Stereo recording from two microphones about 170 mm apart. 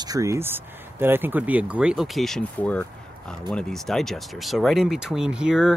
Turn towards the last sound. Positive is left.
turn(degrees=-5)  # may be behind; listen again after turning